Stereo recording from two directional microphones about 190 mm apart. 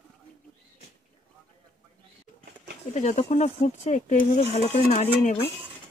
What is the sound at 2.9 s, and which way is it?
Speech, 40° left (ahead or behind).